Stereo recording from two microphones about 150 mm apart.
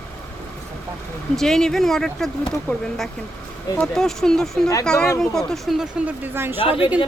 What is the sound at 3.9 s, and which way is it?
Speech, 5° left (ahead or behind).